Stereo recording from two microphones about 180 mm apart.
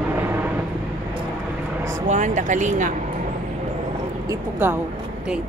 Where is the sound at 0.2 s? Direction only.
10° right (ahead or behind).